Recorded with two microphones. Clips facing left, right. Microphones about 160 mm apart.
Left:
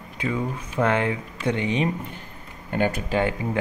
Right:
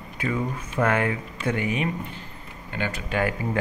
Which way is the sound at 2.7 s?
50° left (ahead or behind).